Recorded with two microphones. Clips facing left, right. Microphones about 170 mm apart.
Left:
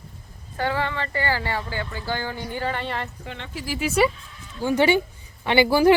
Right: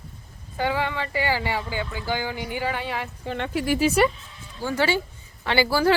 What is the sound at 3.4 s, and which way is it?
Speech, 55° right (ahead or behind).